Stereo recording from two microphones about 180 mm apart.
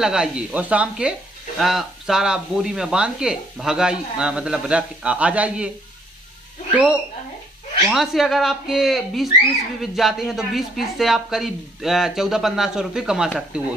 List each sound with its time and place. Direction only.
0.0 s speech: 5° right (ahead or behind)
6.7 s speech: 5° right (ahead or behind)